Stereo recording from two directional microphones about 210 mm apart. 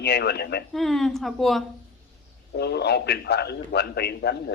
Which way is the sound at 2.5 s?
50° left (ahead or behind).